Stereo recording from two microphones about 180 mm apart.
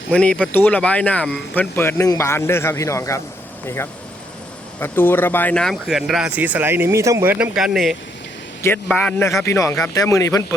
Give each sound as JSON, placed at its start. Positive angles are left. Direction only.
{"t": 0.1, "sound": "speech", "side_deg": 5}
{"t": 4.8, "sound": "speech", "side_deg": 10}
{"t": 8.6, "sound": "speech", "side_deg": 10}